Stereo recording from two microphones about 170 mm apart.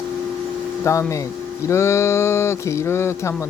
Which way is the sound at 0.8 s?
15° left (ahead or behind).